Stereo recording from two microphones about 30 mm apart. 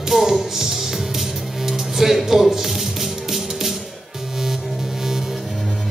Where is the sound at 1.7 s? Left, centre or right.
Centre.